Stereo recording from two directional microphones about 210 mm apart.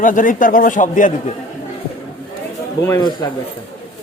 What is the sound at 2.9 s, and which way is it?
Speech, 20° left (ahead or behind).